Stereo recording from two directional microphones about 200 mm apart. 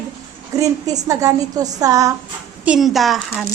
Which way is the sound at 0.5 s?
15° right (ahead or behind).